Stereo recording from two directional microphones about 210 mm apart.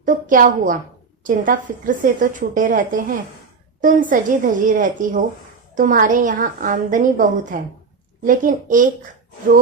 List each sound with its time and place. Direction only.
0.0 s a woman's voice: 40° right (ahead or behind)